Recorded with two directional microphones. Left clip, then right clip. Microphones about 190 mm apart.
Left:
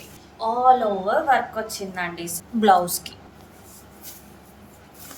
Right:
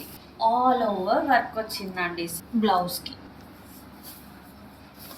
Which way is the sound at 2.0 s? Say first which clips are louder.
Right 1 dB; 65° left (ahead or behind).